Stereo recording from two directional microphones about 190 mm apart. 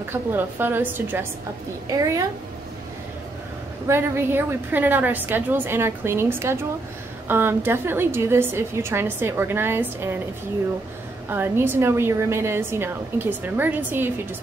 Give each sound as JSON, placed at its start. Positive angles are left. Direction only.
{"t": 0.1, "sound": "a woman's voice", "side_deg": -10}
{"t": 3.8, "sound": "a woman's voice", "side_deg": -15}
{"t": 11.2, "sound": "a woman's voice", "side_deg": -10}